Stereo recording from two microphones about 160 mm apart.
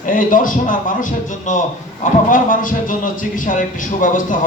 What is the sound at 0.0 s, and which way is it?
A man's voice, 55° left (ahead or behind).